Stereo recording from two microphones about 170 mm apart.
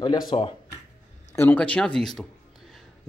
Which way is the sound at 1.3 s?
10° left (ahead or behind).